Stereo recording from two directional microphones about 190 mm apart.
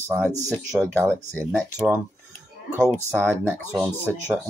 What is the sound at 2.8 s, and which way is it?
Speech, 10° left (ahead or behind).